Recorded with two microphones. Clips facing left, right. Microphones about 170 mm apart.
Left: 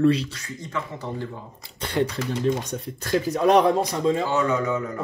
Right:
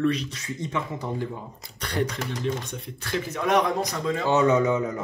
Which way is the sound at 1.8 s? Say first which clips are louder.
Left 3 dB; 25° left (ahead or behind).